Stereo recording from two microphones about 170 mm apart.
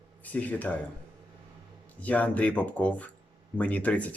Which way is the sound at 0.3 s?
10° left (ahead or behind).